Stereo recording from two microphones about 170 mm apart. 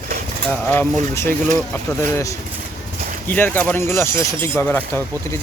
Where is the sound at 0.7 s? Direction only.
15° left (ahead or behind).